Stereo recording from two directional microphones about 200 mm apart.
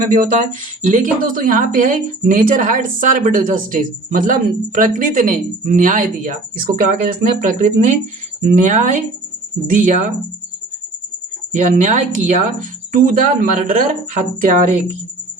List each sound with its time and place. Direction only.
0.0 s speech: 45° right (ahead or behind)
11.5 s speech: 35° right (ahead or behind)